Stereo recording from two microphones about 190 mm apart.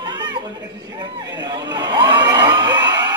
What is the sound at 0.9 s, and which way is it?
Crowd, 20° right (ahead or behind).